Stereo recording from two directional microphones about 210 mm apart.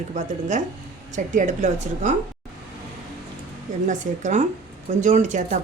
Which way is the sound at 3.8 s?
35° right (ahead or behind).